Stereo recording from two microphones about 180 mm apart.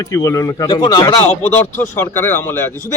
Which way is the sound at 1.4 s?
10° left (ahead or behind).